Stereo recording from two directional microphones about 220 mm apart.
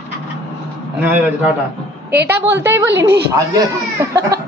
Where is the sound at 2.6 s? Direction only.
55° right (ahead or behind).